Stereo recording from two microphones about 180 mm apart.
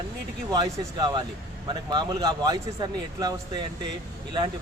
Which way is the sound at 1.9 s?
20° right (ahead or behind).